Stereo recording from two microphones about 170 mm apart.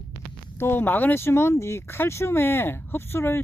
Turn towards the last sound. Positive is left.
turn(degrees=15)  # may be behind; listen again after turning